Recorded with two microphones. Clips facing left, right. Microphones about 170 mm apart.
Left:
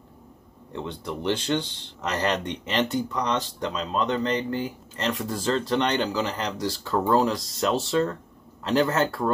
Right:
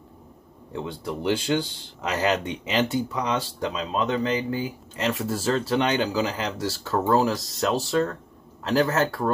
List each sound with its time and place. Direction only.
0.7 s speech: 5° right (ahead or behind)